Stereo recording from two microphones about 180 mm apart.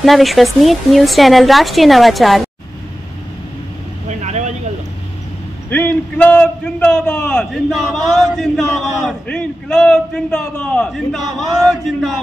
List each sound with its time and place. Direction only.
0.0 s a man's voice: centre (ahead or behind)
4.1 s speech: 40° right (ahead or behind)
5.7 s a man's voice: 10° left (ahead or behind)